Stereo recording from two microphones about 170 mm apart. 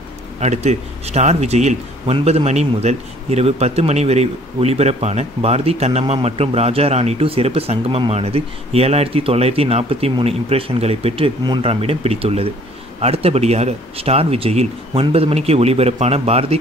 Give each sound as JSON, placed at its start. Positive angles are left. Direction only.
{"t": 0.4, "sound": "speech", "side_deg": -40}